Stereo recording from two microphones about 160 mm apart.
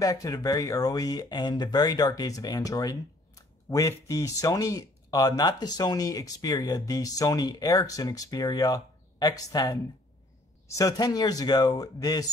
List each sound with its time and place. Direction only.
0.0 s speech: 20° left (ahead or behind)